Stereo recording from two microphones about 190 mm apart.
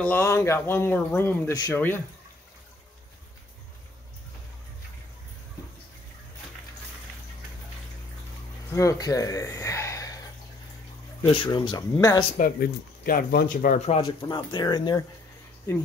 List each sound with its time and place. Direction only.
0.0 s speech: 10° left (ahead or behind)
8.7 s speech: 15° left (ahead or behind)
11.2 s speech: 25° left (ahead or behind)
12.4 s speech: 50° left (ahead or behind); by 15.0 s 20° left (ahead or behind)